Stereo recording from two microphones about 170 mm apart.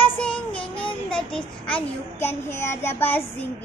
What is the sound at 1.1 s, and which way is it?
A child's voice, 5° left (ahead or behind).